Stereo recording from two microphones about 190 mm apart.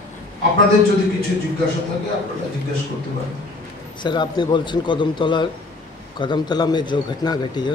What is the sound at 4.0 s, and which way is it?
A man's voice, 25° left (ahead or behind).